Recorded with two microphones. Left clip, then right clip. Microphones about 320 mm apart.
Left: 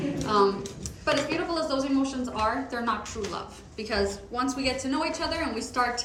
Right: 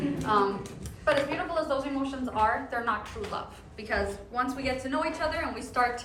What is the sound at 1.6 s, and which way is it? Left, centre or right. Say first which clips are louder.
Speech: left 3 dB; centre.